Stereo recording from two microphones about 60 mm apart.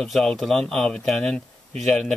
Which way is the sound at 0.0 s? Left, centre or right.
Centre.